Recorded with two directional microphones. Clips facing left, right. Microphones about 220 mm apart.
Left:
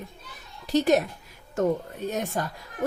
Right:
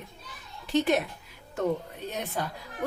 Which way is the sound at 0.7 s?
40° left (ahead or behind).